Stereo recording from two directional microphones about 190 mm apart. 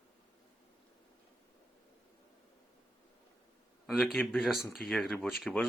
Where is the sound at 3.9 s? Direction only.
Centre (ahead or behind).